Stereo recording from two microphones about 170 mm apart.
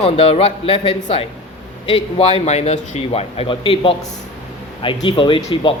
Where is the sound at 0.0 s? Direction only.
35° left (ahead or behind).